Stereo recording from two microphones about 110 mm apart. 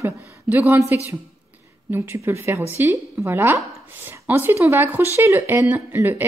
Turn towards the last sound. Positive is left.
turn(degrees=-20)  # may be behind; listen again after turning